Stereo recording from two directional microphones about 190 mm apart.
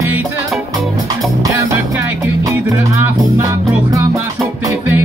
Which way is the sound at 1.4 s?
15° right (ahead or behind).